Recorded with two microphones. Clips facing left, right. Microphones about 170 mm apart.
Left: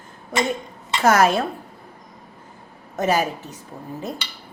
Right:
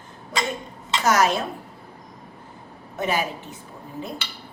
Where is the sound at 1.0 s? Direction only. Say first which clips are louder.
Left 4 dB; 55° left (ahead or behind).